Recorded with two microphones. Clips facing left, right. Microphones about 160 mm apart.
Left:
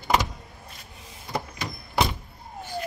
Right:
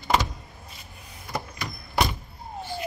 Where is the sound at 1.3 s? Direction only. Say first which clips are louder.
Left 2 dB; 25° left (ahead or behind).